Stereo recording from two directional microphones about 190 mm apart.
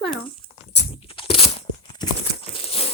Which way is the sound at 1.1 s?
30° left (ahead or behind).